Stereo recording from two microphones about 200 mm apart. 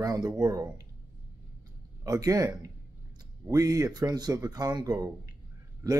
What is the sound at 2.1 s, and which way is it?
Speech, 20° right (ahead or behind).